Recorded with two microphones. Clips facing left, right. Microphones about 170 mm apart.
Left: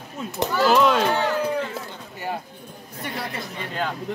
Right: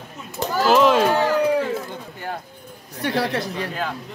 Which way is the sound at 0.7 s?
Centre (ahead or behind).